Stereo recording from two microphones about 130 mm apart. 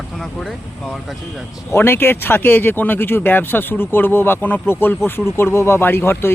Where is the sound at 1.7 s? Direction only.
15° left (ahead or behind).